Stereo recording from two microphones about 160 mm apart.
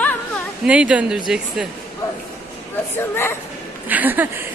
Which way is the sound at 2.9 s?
15° left (ahead or behind).